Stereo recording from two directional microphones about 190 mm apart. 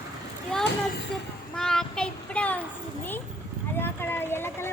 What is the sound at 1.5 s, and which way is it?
Child singing, 5° left (ahead or behind).